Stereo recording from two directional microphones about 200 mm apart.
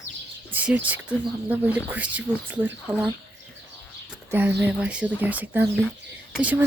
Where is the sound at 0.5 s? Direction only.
5° right (ahead or behind).